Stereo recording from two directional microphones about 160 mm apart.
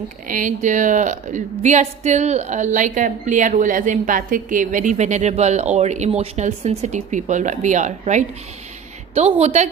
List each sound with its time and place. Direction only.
0.3 s a woman's voice: 55° right (ahead or behind)